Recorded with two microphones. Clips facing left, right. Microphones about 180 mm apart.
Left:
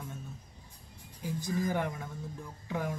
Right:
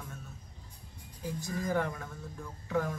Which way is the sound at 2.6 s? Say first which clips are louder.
Right 3 dB; 15° left (ahead or behind).